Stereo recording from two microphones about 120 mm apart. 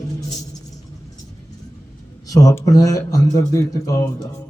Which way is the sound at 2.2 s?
30° left (ahead or behind).